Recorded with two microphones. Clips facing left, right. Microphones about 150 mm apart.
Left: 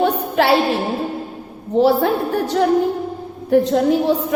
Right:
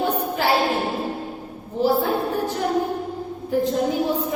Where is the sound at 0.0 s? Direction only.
70° left (ahead or behind).